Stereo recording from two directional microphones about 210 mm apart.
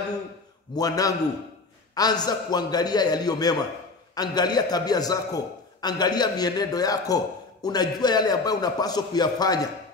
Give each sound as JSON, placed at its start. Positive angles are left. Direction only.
{"t": 0.7, "sound": "a man's voice", "side_deg": 15}